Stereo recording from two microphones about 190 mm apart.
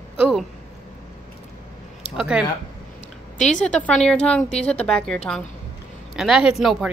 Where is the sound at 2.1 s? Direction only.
5° right (ahead or behind).